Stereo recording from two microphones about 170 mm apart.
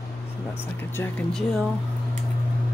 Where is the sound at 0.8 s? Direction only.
10° left (ahead or behind).